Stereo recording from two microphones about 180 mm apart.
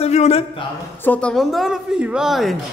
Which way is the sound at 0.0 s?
35° left (ahead or behind).